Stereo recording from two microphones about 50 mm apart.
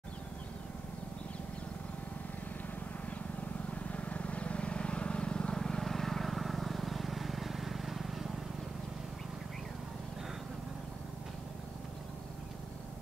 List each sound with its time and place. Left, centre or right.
3.7 s vehicle: left
5.6 s vehicle: centre